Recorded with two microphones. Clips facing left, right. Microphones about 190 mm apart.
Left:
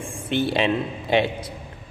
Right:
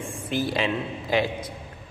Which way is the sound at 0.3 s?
25° left (ahead or behind).